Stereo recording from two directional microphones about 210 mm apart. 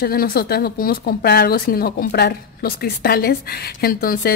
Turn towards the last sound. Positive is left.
turn(degrees=45)  # may be behind; listen again after turning